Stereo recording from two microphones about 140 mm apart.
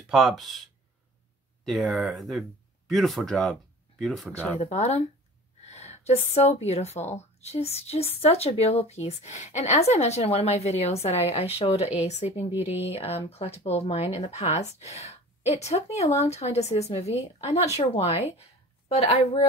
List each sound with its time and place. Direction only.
0.1 s speech: centre (ahead or behind)
4.6 s speech: 50° left (ahead or behind)